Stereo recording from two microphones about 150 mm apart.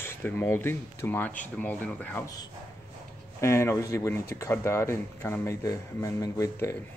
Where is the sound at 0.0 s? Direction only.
15° left (ahead or behind).